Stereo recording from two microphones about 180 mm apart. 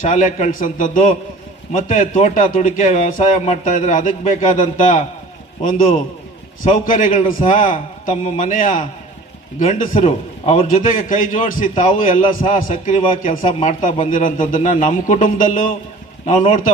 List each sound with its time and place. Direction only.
0.0 s speech: 45° left (ahead or behind)
6.7 s speech: 45° left (ahead or behind)